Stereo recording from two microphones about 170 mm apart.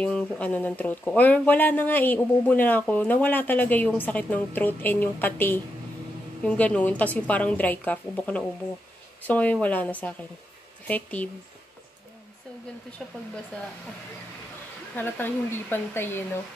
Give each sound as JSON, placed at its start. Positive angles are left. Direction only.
{"t": 0.0, "sound": "speech", "side_deg": 10}
{"t": 13.0, "sound": "speech", "side_deg": 5}
{"t": 15.0, "sound": "speech", "side_deg": 10}